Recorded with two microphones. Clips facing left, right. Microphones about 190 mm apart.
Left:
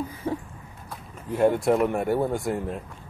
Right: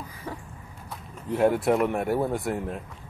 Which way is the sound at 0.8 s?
Centre (ahead or behind).